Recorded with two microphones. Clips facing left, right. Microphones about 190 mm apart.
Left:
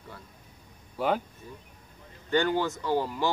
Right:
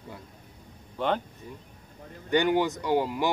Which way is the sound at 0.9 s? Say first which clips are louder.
Even; 5° left (ahead or behind).